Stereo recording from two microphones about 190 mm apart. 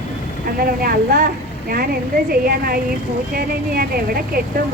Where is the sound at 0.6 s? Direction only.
50° right (ahead or behind).